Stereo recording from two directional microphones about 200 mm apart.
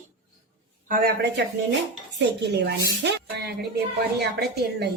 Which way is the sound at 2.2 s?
60° right (ahead or behind).